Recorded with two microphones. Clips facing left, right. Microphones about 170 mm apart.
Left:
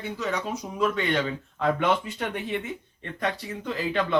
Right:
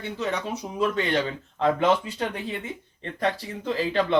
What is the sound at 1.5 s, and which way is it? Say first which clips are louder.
Speech: right 3 dB; 30° right (ahead or behind).